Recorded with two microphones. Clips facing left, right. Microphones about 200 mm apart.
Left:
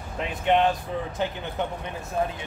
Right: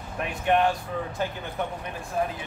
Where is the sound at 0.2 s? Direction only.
20° left (ahead or behind).